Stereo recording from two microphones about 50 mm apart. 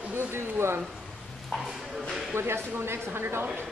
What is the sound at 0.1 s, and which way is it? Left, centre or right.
Speech, right.